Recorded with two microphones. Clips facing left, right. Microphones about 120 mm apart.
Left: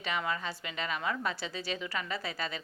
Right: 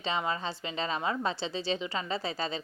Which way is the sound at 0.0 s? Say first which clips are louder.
Right 2 dB; 25° right (ahead or behind).